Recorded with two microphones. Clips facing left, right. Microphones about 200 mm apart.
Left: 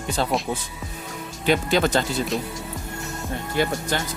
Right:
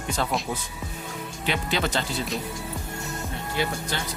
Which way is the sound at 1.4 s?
45° left (ahead or behind).